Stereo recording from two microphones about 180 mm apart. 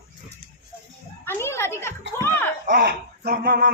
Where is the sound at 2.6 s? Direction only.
55° right (ahead or behind).